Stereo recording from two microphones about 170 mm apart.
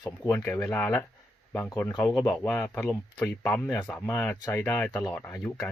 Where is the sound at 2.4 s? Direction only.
15° left (ahead or behind).